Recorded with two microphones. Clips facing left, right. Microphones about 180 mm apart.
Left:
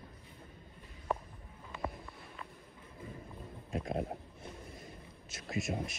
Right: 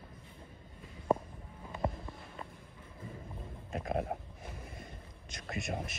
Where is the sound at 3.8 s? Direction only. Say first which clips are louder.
Right 3 dB; 55° right (ahead or behind).